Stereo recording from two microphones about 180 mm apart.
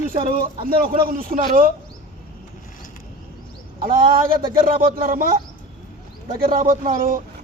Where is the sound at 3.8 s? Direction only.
55° right (ahead or behind).